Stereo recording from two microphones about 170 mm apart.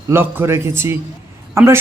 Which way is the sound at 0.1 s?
15° right (ahead or behind).